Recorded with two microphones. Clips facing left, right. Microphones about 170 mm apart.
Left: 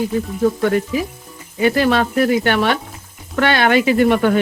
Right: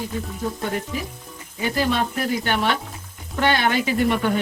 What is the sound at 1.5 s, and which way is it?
Speech, 80° left.